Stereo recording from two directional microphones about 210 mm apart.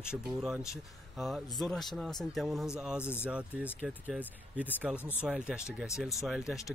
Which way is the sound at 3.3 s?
5° right (ahead or behind).